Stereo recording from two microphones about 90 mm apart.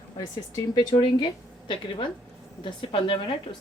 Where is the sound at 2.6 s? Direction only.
75° left (ahead or behind).